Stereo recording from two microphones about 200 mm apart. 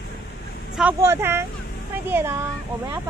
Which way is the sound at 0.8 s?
10° right (ahead or behind).